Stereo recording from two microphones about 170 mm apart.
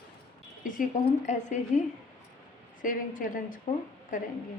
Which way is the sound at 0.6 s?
50° left (ahead or behind).